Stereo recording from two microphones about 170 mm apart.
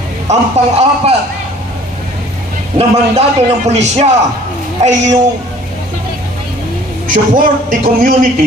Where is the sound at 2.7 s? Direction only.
35° right (ahead or behind).